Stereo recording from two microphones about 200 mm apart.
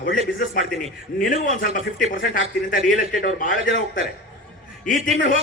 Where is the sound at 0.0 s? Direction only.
40° left (ahead or behind).